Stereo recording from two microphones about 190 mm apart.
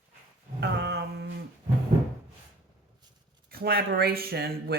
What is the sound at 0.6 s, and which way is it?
Mantra, 65° right (ahead or behind).